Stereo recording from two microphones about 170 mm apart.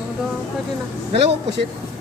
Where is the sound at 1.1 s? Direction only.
35° right (ahead or behind).